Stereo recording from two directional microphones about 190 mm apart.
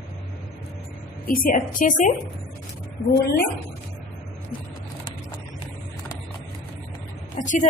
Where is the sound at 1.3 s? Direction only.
45° left (ahead or behind).